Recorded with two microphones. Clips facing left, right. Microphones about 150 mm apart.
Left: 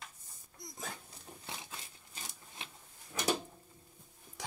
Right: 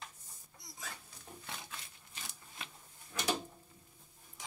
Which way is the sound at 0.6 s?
50° left (ahead or behind).